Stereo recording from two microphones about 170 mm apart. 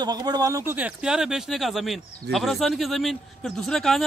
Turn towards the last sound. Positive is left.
turn(degrees=0)  # may be behind; listen again after turning